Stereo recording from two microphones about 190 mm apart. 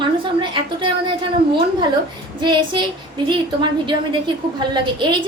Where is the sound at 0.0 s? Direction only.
25° right (ahead or behind).